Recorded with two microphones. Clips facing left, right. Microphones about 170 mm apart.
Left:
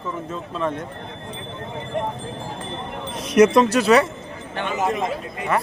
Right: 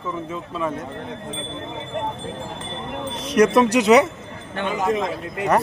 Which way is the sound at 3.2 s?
10° left (ahead or behind).